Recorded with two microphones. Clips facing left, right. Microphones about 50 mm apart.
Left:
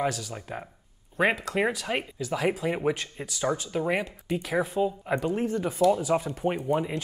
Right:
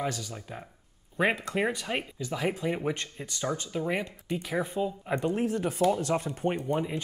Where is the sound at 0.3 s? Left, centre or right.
Centre.